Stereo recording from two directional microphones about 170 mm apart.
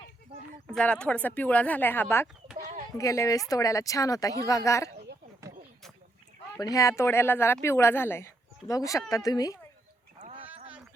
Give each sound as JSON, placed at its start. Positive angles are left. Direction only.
{"t": 0.7, "sound": "speech", "side_deg": 5}
{"t": 6.6, "sound": "speech", "side_deg": 20}